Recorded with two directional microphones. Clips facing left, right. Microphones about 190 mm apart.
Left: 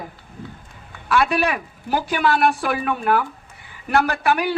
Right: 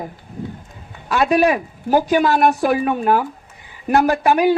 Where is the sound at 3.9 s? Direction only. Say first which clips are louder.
Right 4 dB; 20° right (ahead or behind).